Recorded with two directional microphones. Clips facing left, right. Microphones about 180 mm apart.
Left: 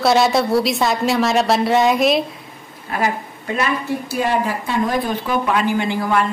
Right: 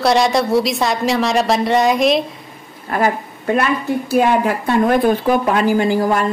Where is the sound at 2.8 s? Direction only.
50° right (ahead or behind).